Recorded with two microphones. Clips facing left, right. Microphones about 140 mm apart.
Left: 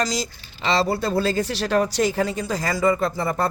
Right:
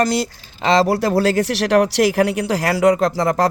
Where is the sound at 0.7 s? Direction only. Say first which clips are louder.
Right 6 dB; 85° right.